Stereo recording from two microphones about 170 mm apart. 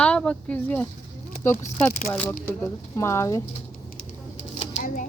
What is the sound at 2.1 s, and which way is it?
Speech, 15° left (ahead or behind).